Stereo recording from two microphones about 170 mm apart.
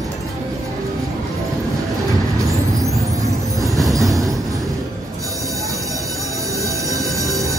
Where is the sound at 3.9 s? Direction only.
20° right (ahead or behind).